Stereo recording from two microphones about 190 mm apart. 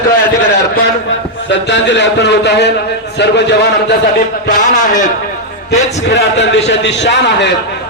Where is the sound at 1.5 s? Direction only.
70° left (ahead or behind).